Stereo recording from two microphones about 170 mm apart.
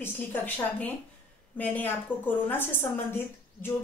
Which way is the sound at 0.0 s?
10° left (ahead or behind).